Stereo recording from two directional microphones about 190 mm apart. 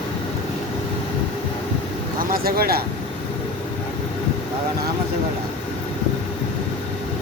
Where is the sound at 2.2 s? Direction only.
50° right (ahead or behind).